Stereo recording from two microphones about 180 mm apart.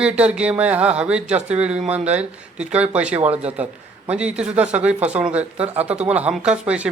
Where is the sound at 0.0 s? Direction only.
5° right (ahead or behind).